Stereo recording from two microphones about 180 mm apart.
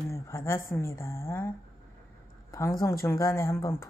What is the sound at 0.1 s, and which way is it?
A woman's voice, 15° left (ahead or behind).